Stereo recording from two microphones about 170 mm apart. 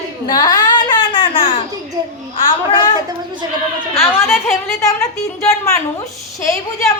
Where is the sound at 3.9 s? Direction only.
15° left (ahead or behind).